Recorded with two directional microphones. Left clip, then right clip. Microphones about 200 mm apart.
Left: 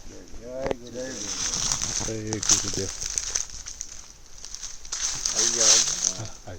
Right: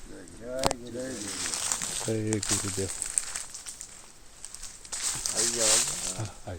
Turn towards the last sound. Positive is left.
turn(degrees=-25)  # may be behind; listen again after turning